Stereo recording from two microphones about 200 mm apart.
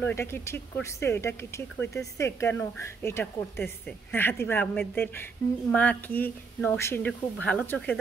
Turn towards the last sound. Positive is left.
turn(degrees=5)  # may be behind; listen again after turning